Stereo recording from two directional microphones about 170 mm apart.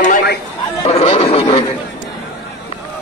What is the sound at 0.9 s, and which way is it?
Speech, 35° left (ahead or behind).